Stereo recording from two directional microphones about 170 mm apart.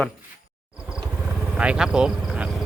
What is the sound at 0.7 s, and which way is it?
Vehicle, 5° right (ahead or behind).